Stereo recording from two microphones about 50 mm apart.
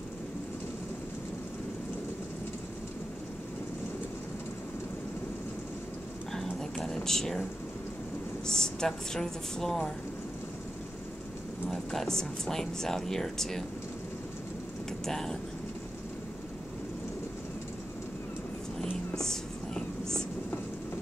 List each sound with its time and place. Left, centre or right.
6.3 s a sound: centre
8.5 s speech: centre
11.7 s speech: centre
15.0 s speech: centre
18.8 s vehicle: centre